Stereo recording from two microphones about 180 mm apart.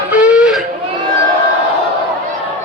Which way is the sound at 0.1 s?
5° right (ahead or behind).